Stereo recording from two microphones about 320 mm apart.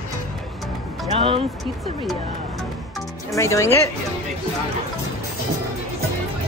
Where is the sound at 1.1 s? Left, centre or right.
Centre.